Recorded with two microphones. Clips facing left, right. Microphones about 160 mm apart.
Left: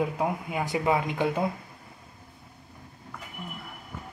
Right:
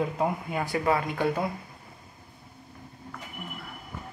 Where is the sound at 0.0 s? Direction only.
10° left (ahead or behind).